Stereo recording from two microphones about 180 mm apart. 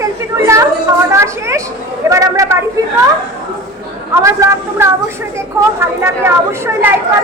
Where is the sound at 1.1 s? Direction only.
15° right (ahead or behind).